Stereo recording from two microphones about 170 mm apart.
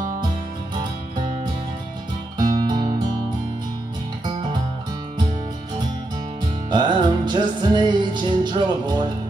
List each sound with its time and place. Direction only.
2.3 s music: 25° right (ahead or behind)
6.7 s music: 25° right (ahead or behind)